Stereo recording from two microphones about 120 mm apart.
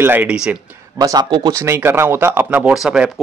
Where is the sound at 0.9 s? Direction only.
30° right (ahead or behind).